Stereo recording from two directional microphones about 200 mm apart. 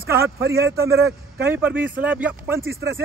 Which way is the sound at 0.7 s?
15° right (ahead or behind).